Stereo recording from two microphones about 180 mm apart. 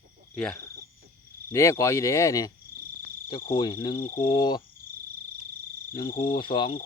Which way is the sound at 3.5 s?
25° left (ahead or behind).